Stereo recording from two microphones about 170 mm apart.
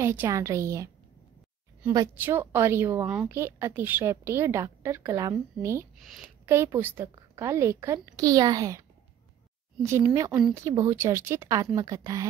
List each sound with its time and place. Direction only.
0.0 s a woman's voice: 15° right (ahead or behind)
2.2 s a woman's voice: 15° right (ahead or behind)
10.0 s a woman's voice: 20° right (ahead or behind)